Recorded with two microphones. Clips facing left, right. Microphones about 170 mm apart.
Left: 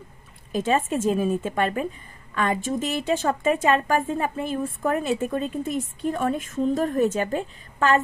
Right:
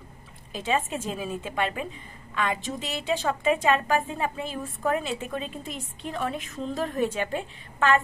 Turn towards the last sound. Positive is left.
turn(degrees=40)  # may be behind; listen again after turning